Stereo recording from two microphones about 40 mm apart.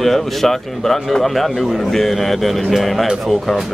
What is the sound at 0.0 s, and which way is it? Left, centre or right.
A man's voice, centre.